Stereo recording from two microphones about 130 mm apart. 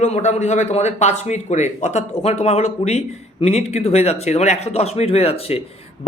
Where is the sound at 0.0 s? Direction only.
65° left (ahead or behind).